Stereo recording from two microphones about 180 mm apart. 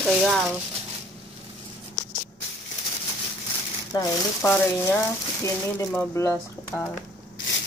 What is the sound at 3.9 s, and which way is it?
Speech, 20° left (ahead or behind).